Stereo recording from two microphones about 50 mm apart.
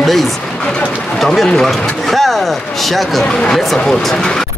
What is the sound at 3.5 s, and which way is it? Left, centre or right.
Speech, centre.